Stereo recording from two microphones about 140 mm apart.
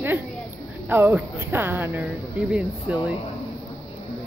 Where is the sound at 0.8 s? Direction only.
15° right (ahead or behind).